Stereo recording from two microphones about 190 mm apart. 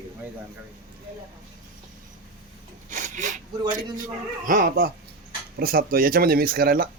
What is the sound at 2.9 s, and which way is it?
Speech, 40° right (ahead or behind).